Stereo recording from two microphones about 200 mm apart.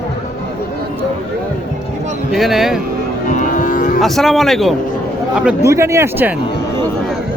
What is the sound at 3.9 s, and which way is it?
Speech, centre (ahead or behind).